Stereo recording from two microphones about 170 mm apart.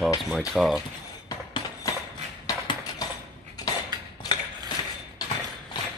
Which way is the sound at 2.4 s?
25° left (ahead or behind).